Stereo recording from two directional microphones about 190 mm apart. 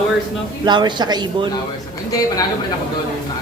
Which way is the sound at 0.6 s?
25° right (ahead or behind).